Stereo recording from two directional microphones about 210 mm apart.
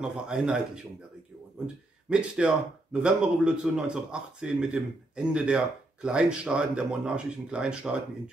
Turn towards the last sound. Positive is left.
turn(degrees=-5)  # may be behind; listen again after turning